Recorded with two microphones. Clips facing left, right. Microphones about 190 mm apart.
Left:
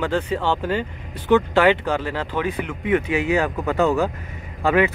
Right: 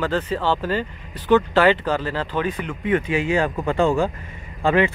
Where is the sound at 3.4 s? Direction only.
15° right (ahead or behind).